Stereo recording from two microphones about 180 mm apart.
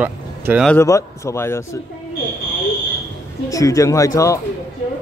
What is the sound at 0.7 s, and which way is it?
Speech, 15° left (ahead or behind).